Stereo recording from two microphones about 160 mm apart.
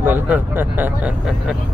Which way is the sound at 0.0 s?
10° right (ahead or behind).